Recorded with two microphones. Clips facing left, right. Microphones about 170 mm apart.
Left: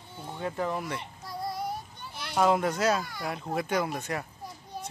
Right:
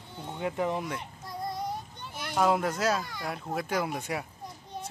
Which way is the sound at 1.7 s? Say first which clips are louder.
Even; 20° right (ahead or behind).